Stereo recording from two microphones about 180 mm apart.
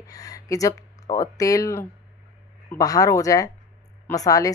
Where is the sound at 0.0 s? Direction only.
20° left (ahead or behind).